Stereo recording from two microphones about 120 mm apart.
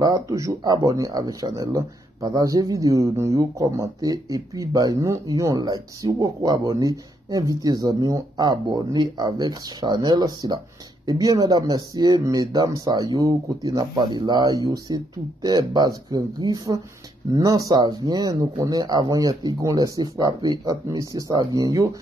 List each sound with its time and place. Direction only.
0.0 s speech: 25° right (ahead or behind)